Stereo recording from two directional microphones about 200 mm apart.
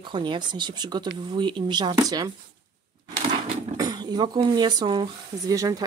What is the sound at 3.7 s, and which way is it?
Speech, 20° right (ahead or behind).